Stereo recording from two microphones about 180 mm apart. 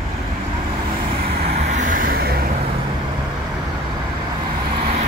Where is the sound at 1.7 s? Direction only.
45° right (ahead or behind).